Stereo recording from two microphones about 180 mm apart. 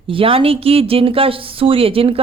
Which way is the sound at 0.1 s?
30° right (ahead or behind).